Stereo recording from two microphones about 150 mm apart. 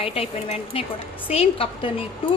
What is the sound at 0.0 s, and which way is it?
Speech, 40° left (ahead or behind).